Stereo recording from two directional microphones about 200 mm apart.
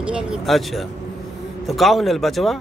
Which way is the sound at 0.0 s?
5° right (ahead or behind).